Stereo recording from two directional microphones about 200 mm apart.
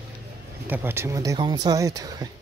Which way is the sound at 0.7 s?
10° right (ahead or behind).